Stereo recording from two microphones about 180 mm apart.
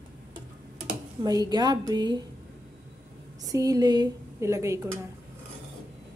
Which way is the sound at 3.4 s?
20° right (ahead or behind).